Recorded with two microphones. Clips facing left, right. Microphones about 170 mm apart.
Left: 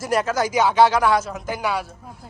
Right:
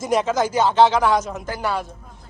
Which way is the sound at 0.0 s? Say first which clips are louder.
Right 2 dB; 5° left (ahead or behind).